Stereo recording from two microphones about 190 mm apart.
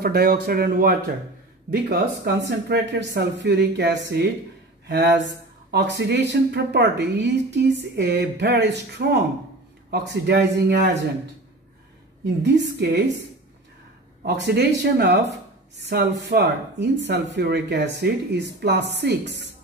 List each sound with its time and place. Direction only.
0.0 s speech: 55° right (ahead or behind)
4.8 s a sound: 65° right (ahead or behind)
5.7 s speech: 65° right (ahead or behind)
12.5 s speech: 65° right (ahead or behind)
14.2 s speech: 60° right (ahead or behind)